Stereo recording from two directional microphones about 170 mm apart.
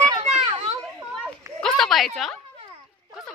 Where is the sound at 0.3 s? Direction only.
35° right (ahead or behind).